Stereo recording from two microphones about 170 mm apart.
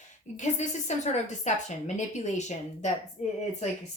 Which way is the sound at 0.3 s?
45° left (ahead or behind).